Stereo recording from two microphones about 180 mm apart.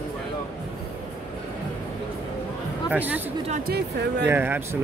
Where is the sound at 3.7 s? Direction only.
65° right (ahead or behind).